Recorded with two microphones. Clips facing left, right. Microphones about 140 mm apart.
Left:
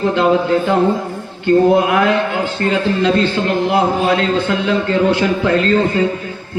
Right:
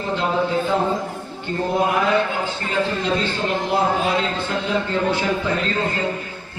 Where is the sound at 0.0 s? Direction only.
80° left.